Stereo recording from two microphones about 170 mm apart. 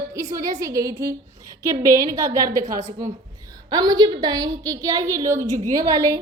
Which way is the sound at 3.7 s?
20° right (ahead or behind).